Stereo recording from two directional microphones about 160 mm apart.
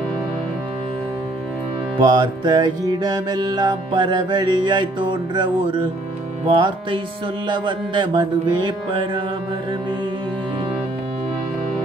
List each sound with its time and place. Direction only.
2.0 s music: 30° right (ahead or behind)